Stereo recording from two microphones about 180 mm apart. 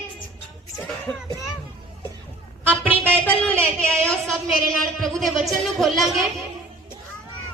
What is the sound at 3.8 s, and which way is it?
A woman's voice, 5° left (ahead or behind).